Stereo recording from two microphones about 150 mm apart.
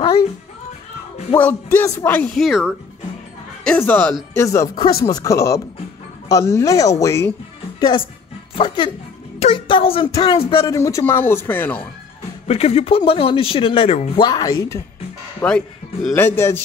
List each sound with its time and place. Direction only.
1.3 s speech: 15° left (ahead or behind)
2.3 s speech: centre (ahead or behind)
3.6 s speech: 10° left (ahead or behind)
8.5 s a woman's voice: 35° left (ahead or behind)
10.7 s speech: 20° left (ahead or behind)
12.4 s speech: 40° left (ahead or behind)
14.2 s speech: 25° left (ahead or behind)
15.4 s speech: 5° left (ahead or behind)
16.2 s speech: 15° left (ahead or behind)